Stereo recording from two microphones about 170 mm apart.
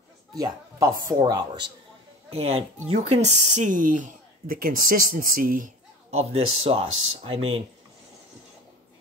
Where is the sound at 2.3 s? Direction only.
35° right (ahead or behind).